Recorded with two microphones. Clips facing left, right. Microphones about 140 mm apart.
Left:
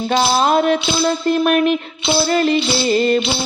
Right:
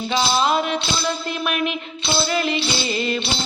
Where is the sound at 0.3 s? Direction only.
45° left (ahead or behind).